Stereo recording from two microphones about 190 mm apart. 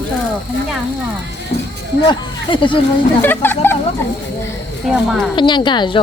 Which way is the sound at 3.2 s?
10° left (ahead or behind).